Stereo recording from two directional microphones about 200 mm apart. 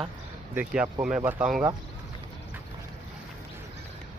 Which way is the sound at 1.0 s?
5° right (ahead or behind).